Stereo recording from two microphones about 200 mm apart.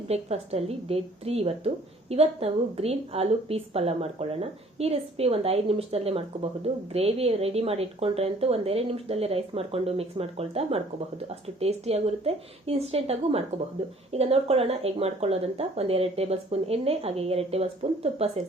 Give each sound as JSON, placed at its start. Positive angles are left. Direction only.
{"t": 0.1, "sound": "a woman's voice", "side_deg": -30}